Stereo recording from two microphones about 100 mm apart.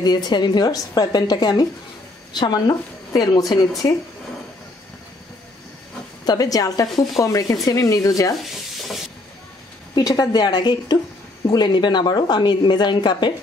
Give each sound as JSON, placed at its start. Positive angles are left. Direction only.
{"t": 0.0, "sound": "speech", "side_deg": 45}
{"t": 6.2, "sound": "speech", "side_deg": 40}
{"t": 8.4, "sound": "stir", "side_deg": 0}
{"t": 9.9, "sound": "speech", "side_deg": 40}